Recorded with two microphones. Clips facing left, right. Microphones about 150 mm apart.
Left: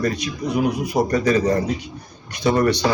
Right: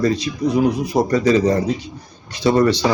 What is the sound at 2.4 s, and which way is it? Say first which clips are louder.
Speech: right 3 dB; 20° right (ahead or behind).